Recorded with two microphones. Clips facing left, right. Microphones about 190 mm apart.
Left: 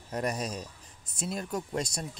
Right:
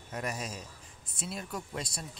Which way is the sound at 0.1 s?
35° left (ahead or behind).